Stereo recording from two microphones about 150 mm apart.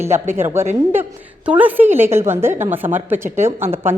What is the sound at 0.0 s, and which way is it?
A woman's voice, 15° right (ahead or behind).